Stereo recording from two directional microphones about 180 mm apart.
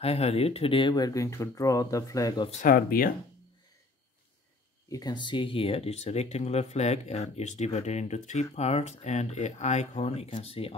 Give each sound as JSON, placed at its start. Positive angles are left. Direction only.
{"t": 0.0, "sound": "speech", "side_deg": 35}
{"t": 2.6, "sound": "speech", "side_deg": 55}
{"t": 4.8, "sound": "speech", "side_deg": 20}